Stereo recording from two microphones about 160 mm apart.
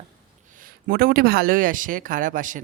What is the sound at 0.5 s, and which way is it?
Speech, 65° right (ahead or behind).